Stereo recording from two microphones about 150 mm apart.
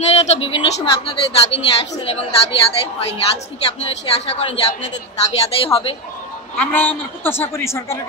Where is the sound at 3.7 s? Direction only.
45° left (ahead or behind).